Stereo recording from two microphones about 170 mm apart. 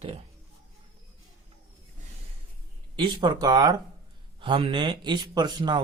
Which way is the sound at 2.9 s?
25° right (ahead or behind).